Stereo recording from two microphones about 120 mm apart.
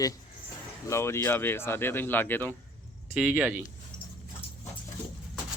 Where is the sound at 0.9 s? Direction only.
20° left (ahead or behind).